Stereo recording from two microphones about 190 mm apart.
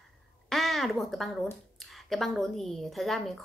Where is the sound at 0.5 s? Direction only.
Centre (ahead or behind).